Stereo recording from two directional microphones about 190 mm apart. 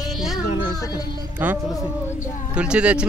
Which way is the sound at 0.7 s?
20° left (ahead or behind).